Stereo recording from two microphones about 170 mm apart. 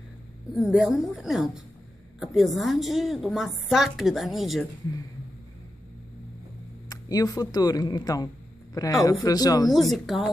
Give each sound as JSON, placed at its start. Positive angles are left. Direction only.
{"t": 0.6, "sound": "a woman's voice", "side_deg": -5}
{"t": 6.9, "sound": "speech", "side_deg": 20}
{"t": 9.7, "sound": "a woman's voice", "side_deg": 0}